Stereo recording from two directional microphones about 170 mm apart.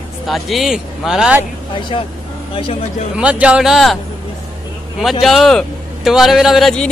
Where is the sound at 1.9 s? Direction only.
30° left (ahead or behind).